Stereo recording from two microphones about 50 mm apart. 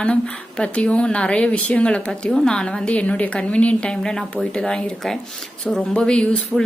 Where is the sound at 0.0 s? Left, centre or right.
Centre.